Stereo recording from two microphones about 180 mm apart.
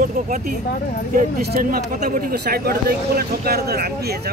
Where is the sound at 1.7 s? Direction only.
50° right (ahead or behind).